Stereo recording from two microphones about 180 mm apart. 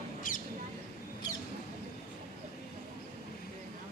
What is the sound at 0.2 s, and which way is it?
Mouse, 50° left (ahead or behind).